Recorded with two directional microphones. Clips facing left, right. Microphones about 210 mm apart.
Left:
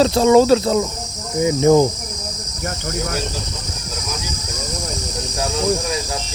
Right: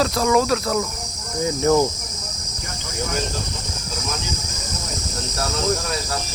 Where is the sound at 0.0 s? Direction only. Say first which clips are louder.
Left 7 dB; 25° left (ahead or behind).